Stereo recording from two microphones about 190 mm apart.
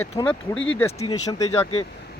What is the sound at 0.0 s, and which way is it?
Speech, 10° left (ahead or behind).